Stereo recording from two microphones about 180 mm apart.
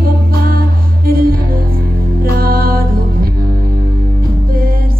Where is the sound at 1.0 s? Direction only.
55° right (ahead or behind).